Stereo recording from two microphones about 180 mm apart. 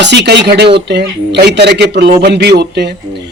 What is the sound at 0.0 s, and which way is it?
Speech, 75° right (ahead or behind).